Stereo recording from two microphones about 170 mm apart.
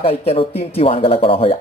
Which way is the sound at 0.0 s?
35° left (ahead or behind).